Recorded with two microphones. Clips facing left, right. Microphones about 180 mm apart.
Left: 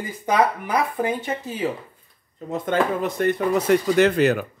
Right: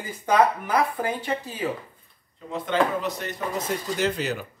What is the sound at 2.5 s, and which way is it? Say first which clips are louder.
Speech: left 2 dB; 50° left (ahead or behind).